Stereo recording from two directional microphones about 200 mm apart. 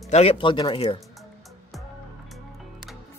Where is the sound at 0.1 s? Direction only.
30° left (ahead or behind).